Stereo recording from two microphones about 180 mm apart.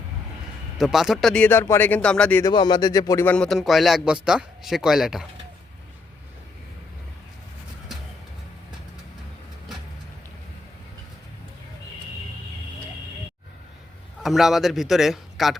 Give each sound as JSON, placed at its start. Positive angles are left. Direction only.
{"t": 0.8, "sound": "speech", "side_deg": 0}
{"t": 2.4, "sound": "speech", "side_deg": 25}
{"t": 3.3, "sound": "speech", "side_deg": 5}
{"t": 14.2, "sound": "speech", "side_deg": 0}